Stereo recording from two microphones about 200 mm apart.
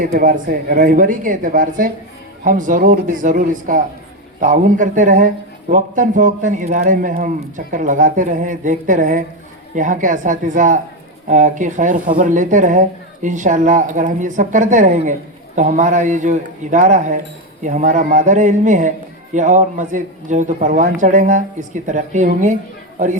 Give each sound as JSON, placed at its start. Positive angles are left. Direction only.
{"t": 0.0, "sound": "a man's voice", "side_deg": -45}